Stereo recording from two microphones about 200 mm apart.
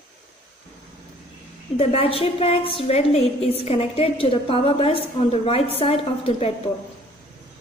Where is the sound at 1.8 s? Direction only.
30° left (ahead or behind).